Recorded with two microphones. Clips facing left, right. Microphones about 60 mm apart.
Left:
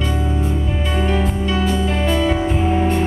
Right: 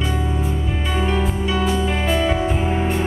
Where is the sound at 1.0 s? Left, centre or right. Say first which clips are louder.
Left 1 dB; centre.